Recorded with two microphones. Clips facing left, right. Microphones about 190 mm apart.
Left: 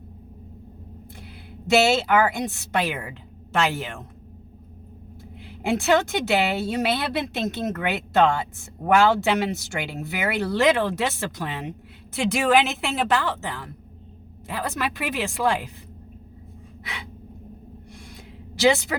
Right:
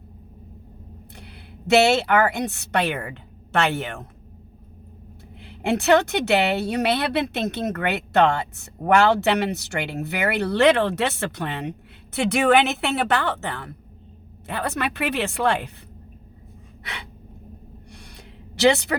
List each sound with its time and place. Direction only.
1.2 s a woman's voice: 65° right (ahead or behind)
5.4 s speech: 65° right (ahead or behind)
18.5 s speech: 65° right (ahead or behind)